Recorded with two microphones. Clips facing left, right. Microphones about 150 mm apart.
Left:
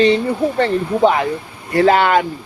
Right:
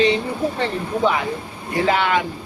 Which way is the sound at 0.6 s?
50° left (ahead or behind).